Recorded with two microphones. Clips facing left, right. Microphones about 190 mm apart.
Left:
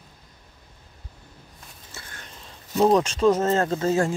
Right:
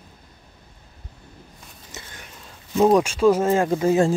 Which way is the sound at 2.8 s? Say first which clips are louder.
Right 2 dB; 10° right (ahead or behind).